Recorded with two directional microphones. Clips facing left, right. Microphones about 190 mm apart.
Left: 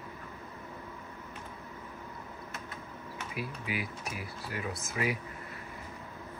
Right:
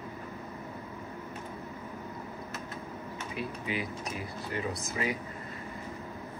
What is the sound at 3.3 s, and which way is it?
Speech, 5° left (ahead or behind).